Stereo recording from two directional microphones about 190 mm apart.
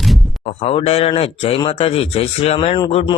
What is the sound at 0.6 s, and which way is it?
Speech, 30° left (ahead or behind).